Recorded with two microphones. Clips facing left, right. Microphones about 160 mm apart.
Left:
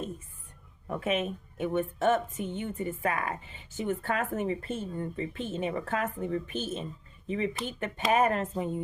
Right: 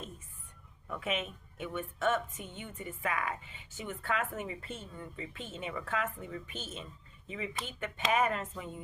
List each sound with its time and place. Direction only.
0.9 s speech: 45° left (ahead or behind)